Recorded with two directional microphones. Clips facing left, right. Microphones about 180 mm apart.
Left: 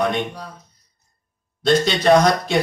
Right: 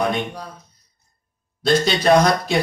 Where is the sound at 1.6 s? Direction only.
5° right (ahead or behind).